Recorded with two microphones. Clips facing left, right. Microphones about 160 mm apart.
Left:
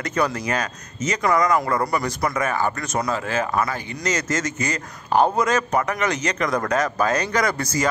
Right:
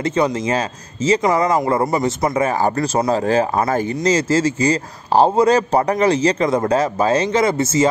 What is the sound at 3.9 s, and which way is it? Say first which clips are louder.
A man's voice: right 6 dB; 30° right (ahead or behind).